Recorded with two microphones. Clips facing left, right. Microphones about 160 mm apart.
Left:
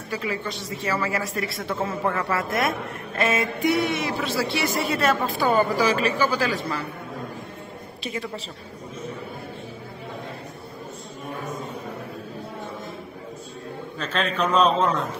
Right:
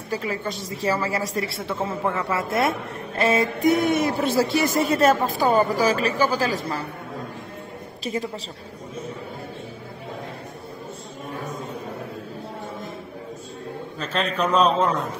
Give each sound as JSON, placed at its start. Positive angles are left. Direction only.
{"t": 0.1, "sound": "a woman's voice", "side_deg": -40}
{"t": 2.0, "sound": "a man's voice", "side_deg": -10}
{"t": 2.3, "sound": "a woman's voice", "side_deg": -30}
{"t": 3.6, "sound": "a woman's voice", "side_deg": -45}
{"t": 8.0, "sound": "a woman's voice", "side_deg": -40}
{"t": 13.9, "sound": "a man's voice", "side_deg": -5}